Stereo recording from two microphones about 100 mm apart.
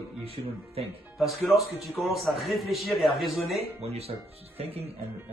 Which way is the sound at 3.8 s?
90° right.